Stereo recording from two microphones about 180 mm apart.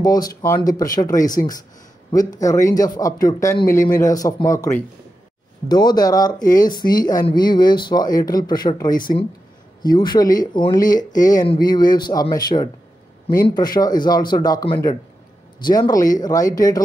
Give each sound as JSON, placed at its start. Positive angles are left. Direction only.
{"t": 0.0, "sound": "speech", "side_deg": 20}